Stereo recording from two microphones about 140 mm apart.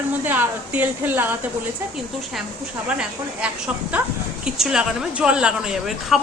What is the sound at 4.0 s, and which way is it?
A woman's voice, 10° right (ahead or behind).